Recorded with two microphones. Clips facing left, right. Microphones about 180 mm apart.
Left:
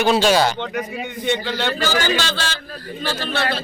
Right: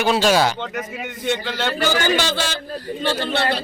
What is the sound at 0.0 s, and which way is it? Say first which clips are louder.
A man's voice: left 1 dB; 5° right (ahead or behind).